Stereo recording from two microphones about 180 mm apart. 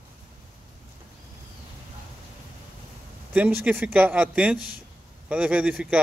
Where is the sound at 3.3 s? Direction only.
5° right (ahead or behind).